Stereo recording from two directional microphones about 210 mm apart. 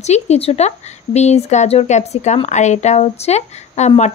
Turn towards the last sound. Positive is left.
turn(degrees=30)  # may be behind; listen again after turning